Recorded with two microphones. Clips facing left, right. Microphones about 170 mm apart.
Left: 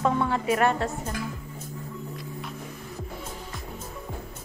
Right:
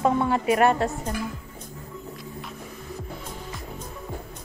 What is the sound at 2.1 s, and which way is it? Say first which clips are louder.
Music: left 1 dB; centre (ahead or behind).